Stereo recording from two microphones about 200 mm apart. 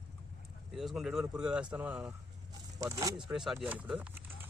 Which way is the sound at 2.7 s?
15° right (ahead or behind).